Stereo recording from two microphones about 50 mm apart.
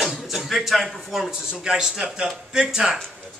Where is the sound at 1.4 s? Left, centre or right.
Centre.